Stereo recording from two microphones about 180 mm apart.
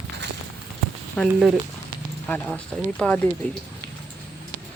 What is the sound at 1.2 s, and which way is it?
Speech, 5° left (ahead or behind).